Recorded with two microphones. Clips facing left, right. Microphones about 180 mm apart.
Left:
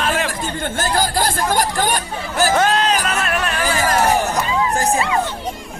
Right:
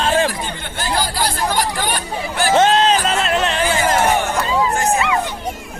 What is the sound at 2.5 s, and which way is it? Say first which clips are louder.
Music: right 6 dB; 25° right (ahead or behind).